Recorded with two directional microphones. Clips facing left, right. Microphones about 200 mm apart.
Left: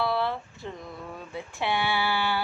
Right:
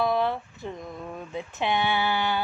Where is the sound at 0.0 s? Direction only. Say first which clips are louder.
Right 3 dB; 15° right (ahead or behind).